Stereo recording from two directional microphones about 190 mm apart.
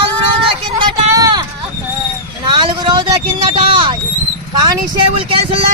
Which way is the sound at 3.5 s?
25° right (ahead or behind).